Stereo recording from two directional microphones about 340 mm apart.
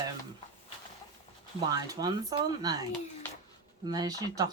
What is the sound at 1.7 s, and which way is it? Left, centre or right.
Speech, centre.